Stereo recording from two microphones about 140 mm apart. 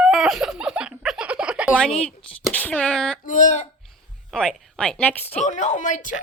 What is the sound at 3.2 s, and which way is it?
Speech, 65° left (ahead or behind).